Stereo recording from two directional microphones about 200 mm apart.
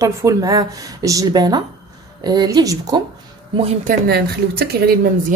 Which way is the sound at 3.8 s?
50° right (ahead or behind).